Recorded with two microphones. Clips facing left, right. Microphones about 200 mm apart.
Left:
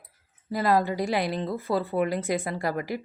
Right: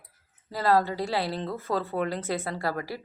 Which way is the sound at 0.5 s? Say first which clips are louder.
Left 1 dB; 15° left (ahead or behind).